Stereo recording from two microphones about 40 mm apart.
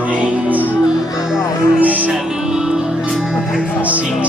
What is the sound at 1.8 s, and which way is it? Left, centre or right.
Music, right.